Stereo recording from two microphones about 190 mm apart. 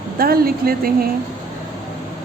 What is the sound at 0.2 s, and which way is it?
Speech, 50° right (ahead or behind).